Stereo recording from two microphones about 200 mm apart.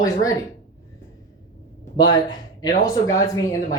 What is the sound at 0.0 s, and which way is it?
Speech, 15° left (ahead or behind).